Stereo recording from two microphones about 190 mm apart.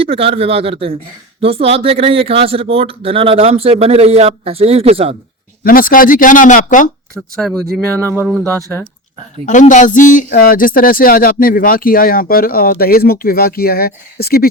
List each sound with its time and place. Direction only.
0.0 s speech: 30° right (ahead or behind)
5.6 s a man's voice: 50° left (ahead or behind)
7.3 s speech: centre (ahead or behind)
9.5 s a man's voice: 40° left (ahead or behind)